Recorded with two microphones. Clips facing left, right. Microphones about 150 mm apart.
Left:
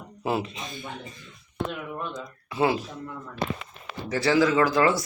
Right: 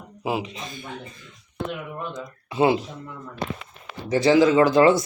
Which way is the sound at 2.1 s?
20° right (ahead or behind).